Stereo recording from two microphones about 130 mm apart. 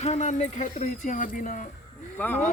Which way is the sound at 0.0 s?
60° left (ahead or behind).